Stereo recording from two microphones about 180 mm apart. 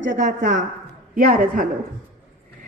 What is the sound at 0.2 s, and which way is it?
A woman's voice, 45° right (ahead or behind).